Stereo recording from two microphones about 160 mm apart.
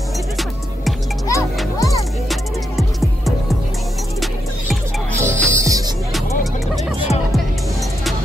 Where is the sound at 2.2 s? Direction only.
Centre (ahead or behind).